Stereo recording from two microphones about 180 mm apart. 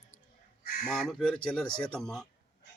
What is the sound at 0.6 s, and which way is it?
Fowl, 55° left (ahead or behind).